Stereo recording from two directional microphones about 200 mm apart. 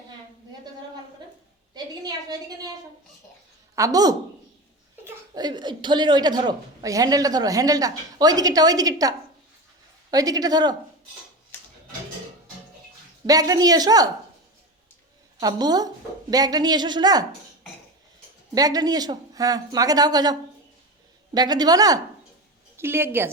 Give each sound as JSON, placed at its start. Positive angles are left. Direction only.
{"t": 3.8, "sound": "a woman's voice", "side_deg": -15}
{"t": 13.2, "sound": "a woman's voice", "side_deg": -15}
{"t": 15.4, "sound": "a woman's voice", "side_deg": -20}
{"t": 18.5, "sound": "a woman's voice", "side_deg": -20}
{"t": 21.3, "sound": "a woman's voice", "side_deg": -20}